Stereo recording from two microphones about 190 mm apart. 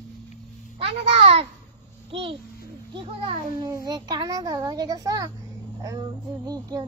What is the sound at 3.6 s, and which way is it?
Child singing, 20° right (ahead or behind).